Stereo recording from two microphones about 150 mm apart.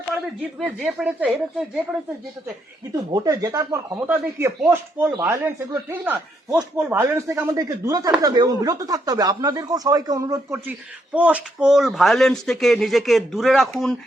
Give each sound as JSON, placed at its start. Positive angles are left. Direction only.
{"t": 0.6, "sound": "speech", "side_deg": 0}
{"t": 2.9, "sound": "speech", "side_deg": -20}